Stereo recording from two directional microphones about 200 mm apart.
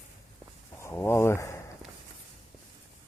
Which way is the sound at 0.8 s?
10° left (ahead or behind).